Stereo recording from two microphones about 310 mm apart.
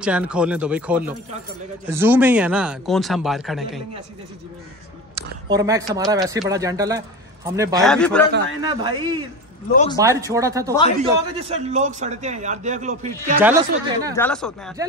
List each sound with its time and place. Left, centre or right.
0.0 s speech: centre
5.1 s a woman's voice: centre
7.7 s speech: centre
8.6 s a man's voice: centre
13.4 s speech: centre
14.1 s speech: centre
14.8 s speech: centre